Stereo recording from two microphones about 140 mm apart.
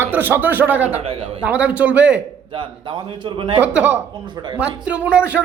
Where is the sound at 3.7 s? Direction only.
10° right (ahead or behind).